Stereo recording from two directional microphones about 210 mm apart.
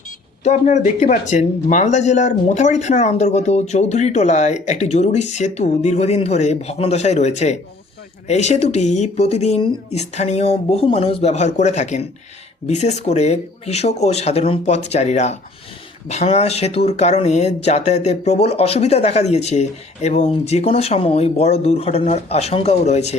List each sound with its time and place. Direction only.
0.4 s speech: 35° left (ahead or behind)